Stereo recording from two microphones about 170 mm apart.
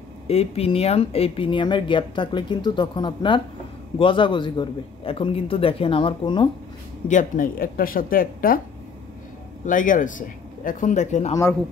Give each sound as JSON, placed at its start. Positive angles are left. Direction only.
{"t": 0.3, "sound": "a man's voice", "side_deg": 35}
{"t": 7.1, "sound": "speech", "side_deg": 50}
{"t": 9.7, "sound": "speech", "side_deg": 50}